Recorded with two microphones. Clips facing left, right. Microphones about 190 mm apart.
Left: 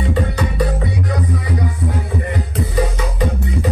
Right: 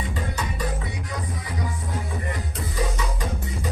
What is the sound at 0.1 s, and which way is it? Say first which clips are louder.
Music: left 10 dB; 65° left (ahead or behind).